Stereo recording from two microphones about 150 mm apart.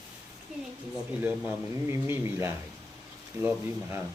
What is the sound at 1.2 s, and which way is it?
Speech, 10° right (ahead or behind).